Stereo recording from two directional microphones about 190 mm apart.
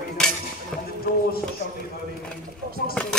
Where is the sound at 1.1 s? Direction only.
45° left (ahead or behind).